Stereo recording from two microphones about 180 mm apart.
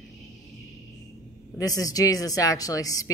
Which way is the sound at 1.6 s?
20° left (ahead or behind).